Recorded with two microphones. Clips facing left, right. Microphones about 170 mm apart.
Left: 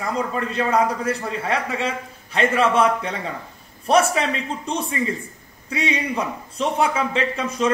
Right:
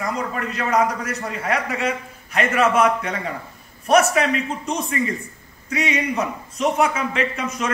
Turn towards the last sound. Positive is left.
turn(degrees=30)  # may be behind; listen again after turning